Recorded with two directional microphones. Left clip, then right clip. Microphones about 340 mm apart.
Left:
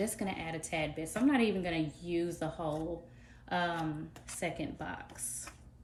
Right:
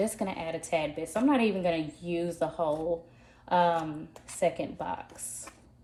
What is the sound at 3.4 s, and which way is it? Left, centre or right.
Speech, centre.